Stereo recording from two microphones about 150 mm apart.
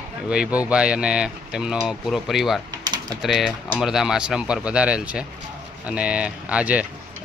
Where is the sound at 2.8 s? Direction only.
25° right (ahead or behind).